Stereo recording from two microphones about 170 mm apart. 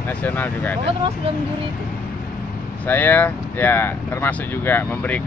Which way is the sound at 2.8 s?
10° left (ahead or behind).